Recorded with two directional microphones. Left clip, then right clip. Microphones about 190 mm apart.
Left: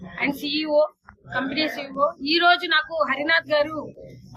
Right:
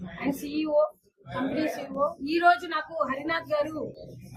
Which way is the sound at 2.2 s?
20° right (ahead or behind).